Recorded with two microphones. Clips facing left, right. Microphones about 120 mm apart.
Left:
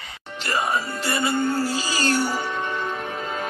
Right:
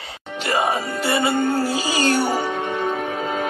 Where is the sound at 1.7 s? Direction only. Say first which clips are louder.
Right 4 dB; 15° right (ahead or behind).